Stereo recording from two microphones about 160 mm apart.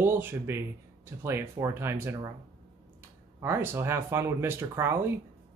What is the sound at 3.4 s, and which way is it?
Speech, 15° right (ahead or behind).